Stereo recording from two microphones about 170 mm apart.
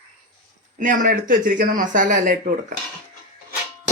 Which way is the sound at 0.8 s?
50° right (ahead or behind).